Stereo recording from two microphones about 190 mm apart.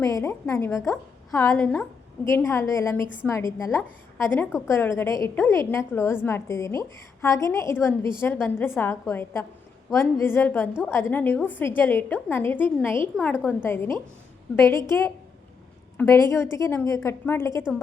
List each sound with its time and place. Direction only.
0.0 s a woman's voice: 15° left (ahead or behind)